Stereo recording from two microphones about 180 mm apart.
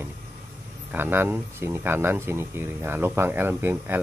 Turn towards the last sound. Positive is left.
turn(degrees=-10)  # may be behind; listen again after turning